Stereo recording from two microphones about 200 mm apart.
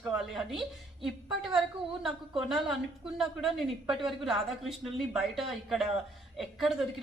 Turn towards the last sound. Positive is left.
turn(degrees=0)  # may be behind; listen again after turning